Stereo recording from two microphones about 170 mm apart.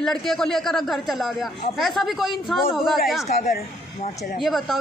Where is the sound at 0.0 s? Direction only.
Centre (ahead or behind).